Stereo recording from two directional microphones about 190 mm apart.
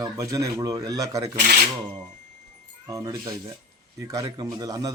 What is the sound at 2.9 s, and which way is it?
A man's voice, 20° right (ahead or behind).